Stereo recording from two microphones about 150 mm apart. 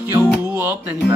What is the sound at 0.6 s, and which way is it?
Music, 10° right (ahead or behind).